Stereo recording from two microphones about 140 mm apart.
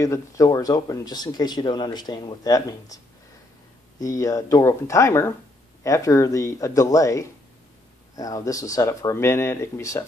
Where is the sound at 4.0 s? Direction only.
25° left (ahead or behind).